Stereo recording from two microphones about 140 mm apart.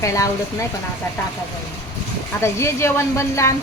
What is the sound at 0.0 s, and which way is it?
Speech, 20° left (ahead or behind).